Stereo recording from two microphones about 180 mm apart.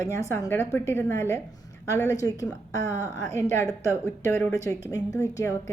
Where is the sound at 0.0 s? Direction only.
15° left (ahead or behind).